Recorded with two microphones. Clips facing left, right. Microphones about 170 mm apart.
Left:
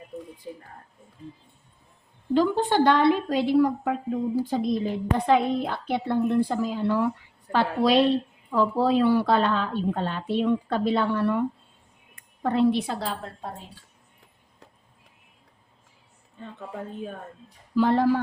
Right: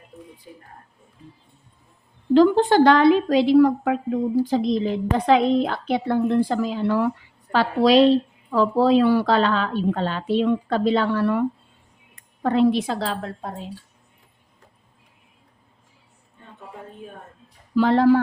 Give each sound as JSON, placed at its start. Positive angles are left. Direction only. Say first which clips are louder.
{"t": 2.3, "sound": "a woman's voice", "louder": "right 7 dB", "side_deg": -80}
{"t": 17.7, "sound": "speech", "louder": "right 4 dB", "side_deg": -85}